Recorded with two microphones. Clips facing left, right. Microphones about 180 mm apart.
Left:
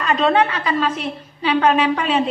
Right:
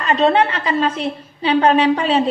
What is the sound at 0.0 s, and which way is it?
A woman's voice, 30° right (ahead or behind).